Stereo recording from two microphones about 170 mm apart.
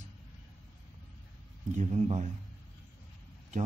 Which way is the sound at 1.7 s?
45° right (ahead or behind).